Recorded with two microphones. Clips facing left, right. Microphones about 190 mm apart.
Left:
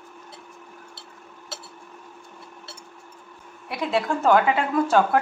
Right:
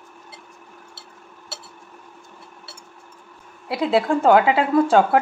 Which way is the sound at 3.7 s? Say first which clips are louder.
Right 5 dB; 30° right (ahead or behind).